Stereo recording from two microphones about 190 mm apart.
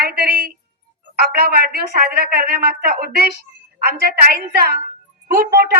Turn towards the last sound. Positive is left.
turn(degrees=-55)  # may be behind; listen again after turning